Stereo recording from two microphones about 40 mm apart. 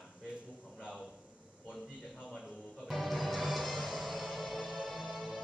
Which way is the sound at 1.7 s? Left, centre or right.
Centre.